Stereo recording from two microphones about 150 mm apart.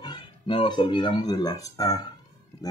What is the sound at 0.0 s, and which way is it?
Speech, 30° left (ahead or behind).